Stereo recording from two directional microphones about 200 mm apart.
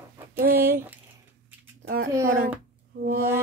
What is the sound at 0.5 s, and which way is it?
Speech, 10° right (ahead or behind).